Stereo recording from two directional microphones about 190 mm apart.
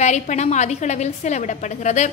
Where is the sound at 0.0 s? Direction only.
40° left (ahead or behind).